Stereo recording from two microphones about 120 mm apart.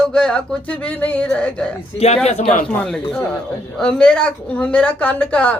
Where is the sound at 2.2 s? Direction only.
65° left (ahead or behind).